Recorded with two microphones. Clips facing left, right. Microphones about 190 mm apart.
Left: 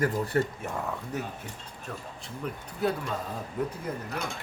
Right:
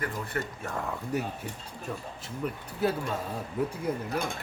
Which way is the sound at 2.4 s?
5° right (ahead or behind).